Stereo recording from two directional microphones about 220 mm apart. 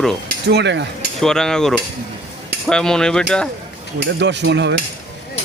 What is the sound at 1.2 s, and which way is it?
Cutlery, centre (ahead or behind).